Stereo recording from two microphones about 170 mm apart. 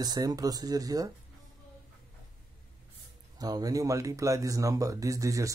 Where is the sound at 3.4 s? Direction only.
20° right (ahead or behind).